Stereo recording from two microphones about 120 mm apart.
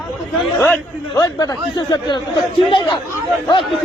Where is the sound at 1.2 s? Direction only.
30° left (ahead or behind).